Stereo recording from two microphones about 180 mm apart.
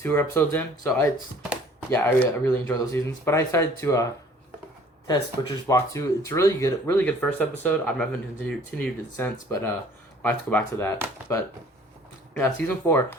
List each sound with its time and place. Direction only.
0.0 s speech: 10° left (ahead or behind)
5.0 s speech: 20° left (ahead or behind)